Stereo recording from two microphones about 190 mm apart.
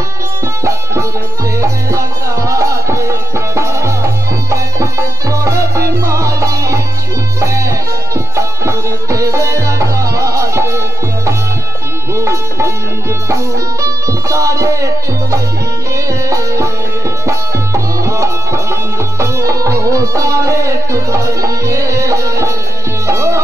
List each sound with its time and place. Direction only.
1.6 s music: 15° right (ahead or behind)
12.2 s music: 15° right (ahead or behind)
13.8 s music: 15° right (ahead or behind)
16.1 s music: 15° right (ahead or behind)